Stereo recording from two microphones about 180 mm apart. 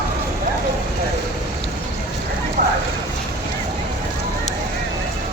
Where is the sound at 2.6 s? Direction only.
45° right (ahead or behind).